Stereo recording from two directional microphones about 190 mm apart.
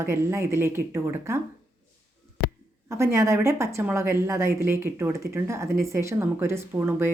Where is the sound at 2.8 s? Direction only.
15° right (ahead or behind).